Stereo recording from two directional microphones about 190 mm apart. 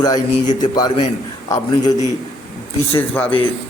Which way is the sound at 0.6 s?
20° left (ahead or behind).